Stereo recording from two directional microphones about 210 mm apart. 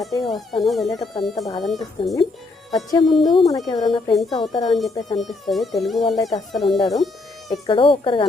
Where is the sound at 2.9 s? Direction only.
25° left (ahead or behind).